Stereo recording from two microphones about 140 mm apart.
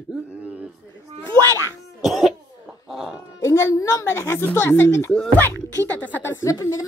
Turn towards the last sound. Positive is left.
turn(degrees=20)  # may be behind; listen again after turning